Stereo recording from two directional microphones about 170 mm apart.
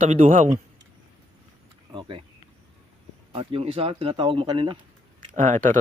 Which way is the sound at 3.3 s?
35° right (ahead or behind).